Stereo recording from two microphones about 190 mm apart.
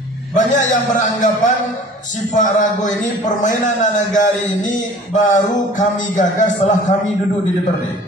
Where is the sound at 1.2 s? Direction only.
40° left (ahead or behind).